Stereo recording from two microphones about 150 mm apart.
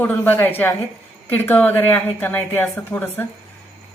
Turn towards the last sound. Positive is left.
turn(degrees=10)  # may be behind; listen again after turning